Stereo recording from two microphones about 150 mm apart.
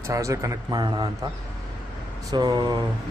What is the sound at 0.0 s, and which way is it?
A man's voice, 20° right (ahead or behind).